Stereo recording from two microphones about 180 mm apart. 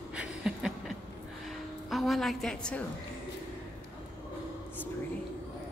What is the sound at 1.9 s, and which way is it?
Speech, centre (ahead or behind).